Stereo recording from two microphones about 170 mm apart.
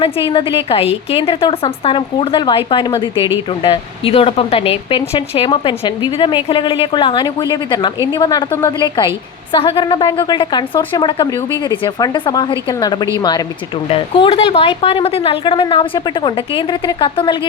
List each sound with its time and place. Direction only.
0.0 s a woman's voice: 30° left (ahead or behind)